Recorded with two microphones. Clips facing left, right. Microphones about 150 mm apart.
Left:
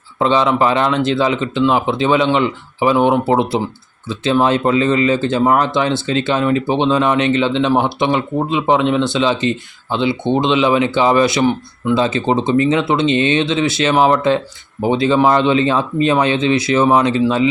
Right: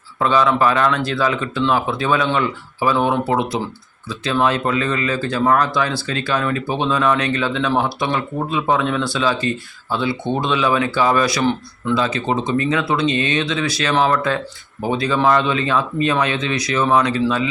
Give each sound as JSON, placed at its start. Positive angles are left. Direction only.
{"t": 0.2, "sound": "speech", "side_deg": 25}